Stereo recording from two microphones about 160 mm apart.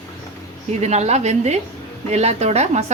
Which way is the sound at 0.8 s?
45° right (ahead or behind).